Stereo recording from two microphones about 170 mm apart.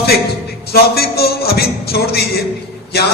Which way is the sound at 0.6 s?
65° left (ahead or behind).